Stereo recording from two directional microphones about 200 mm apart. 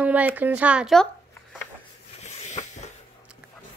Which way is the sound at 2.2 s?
35° left (ahead or behind).